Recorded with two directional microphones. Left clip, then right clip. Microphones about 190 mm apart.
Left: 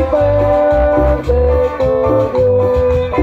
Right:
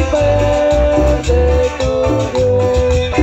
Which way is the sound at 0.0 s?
40° left (ahead or behind).